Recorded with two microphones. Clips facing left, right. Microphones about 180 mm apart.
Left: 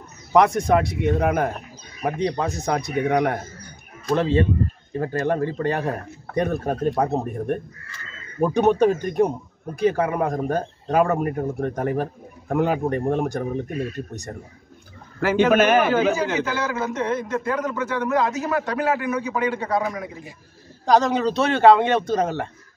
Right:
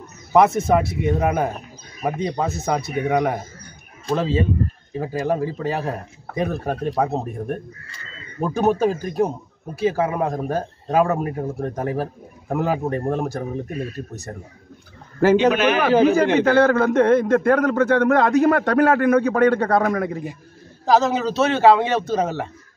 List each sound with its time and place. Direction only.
0.3 s a man's voice: 5° right (ahead or behind)
15.3 s a man's voice: 50° left (ahead or behind)
16.1 s a man's voice: 60° right (ahead or behind)
20.8 s a man's voice: 5° right (ahead or behind)